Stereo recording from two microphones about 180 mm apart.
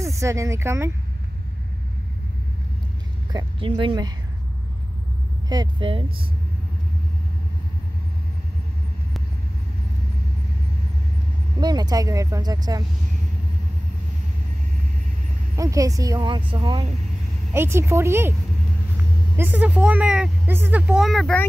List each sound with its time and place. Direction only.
0.0 s speech: 15° right (ahead or behind)
3.3 s speech: 30° right (ahead or behind)
5.5 s speech: 25° right (ahead or behind)
11.6 s speech: 20° right (ahead or behind)
15.5 s speech: 20° right (ahead or behind)
17.5 s speech: 15° right (ahead or behind)
19.3 s speech: 10° right (ahead or behind)